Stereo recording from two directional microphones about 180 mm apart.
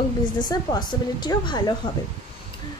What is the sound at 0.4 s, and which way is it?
A woman's voice, 25° left (ahead or behind).